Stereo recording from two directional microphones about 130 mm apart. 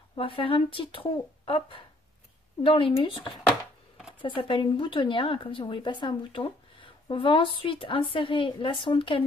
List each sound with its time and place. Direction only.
0.1 s a woman's voice: 40° left (ahead or behind)
4.2 s a woman's voice: 40° left (ahead or behind)